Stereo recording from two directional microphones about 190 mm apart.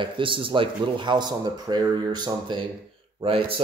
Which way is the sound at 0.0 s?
25° right (ahead or behind).